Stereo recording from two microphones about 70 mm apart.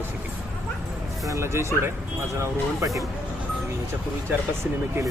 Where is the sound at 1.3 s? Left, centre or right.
Right.